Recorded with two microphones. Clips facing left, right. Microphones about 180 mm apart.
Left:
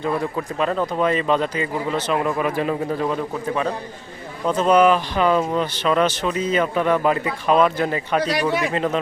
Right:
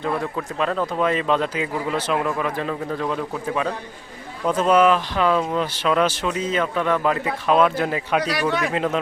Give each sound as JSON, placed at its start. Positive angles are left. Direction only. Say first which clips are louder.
{"t": 0.0, "sound": "speech", "louder": "left 2 dB", "side_deg": 5}
{"t": 8.2, "sound": "a man's voice", "louder": "left 2 dB", "side_deg": 25}
{"t": 8.4, "sound": "speech", "louder": "left 1 dB", "side_deg": 5}